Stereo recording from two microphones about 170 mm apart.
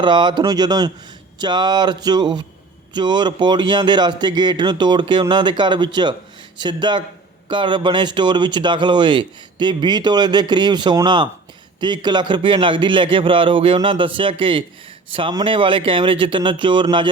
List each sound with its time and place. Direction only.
0.0 s speech: 25° right (ahead or behind)